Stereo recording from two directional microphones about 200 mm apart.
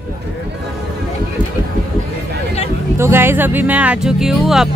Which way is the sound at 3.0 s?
10° right (ahead or behind).